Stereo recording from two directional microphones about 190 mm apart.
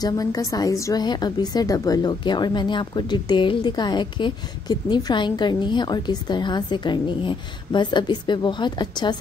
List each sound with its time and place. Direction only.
0.0 s a woman's voice: 20° left (ahead or behind)